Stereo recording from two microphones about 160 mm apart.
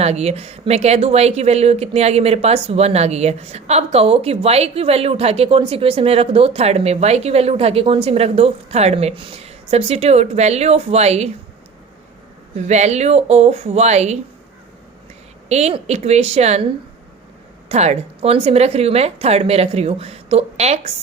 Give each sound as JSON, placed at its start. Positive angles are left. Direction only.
{"t": 0.0, "sound": "speech", "side_deg": -40}
{"t": 12.5, "sound": "speech", "side_deg": -45}
{"t": 15.4, "sound": "speech", "side_deg": -45}
{"t": 17.7, "sound": "speech", "side_deg": -40}